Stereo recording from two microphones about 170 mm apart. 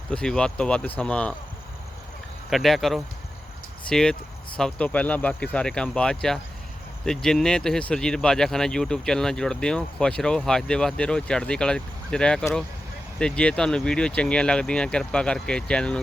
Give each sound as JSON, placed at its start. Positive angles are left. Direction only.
{"t": 0.1, "sound": "speech", "side_deg": 5}
{"t": 2.5, "sound": "speech", "side_deg": 0}